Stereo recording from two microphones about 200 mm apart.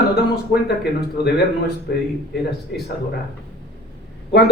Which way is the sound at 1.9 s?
50° left (ahead or behind).